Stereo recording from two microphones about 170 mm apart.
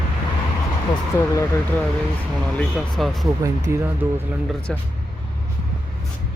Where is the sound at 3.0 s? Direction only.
Centre (ahead or behind).